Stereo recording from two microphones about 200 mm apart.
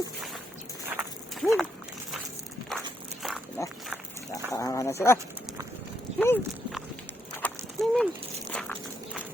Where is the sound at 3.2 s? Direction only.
Centre (ahead or behind).